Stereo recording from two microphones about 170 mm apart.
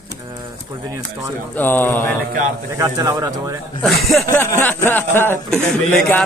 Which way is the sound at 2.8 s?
20° right (ahead or behind).